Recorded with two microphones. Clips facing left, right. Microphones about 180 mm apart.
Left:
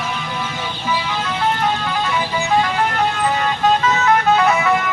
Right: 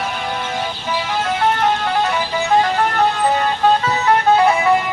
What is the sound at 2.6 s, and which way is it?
Vehicle, 40° right (ahead or behind).